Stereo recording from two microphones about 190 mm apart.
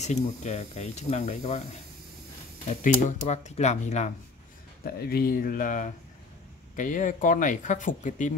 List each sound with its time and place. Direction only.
0.0 s speech: 35° left (ahead or behind)
2.8 s speech: 40° left (ahead or behind)
4.8 s speech: 55° left (ahead or behind)